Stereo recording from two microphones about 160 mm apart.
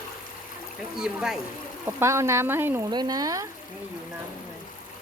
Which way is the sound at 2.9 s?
25° right (ahead or behind).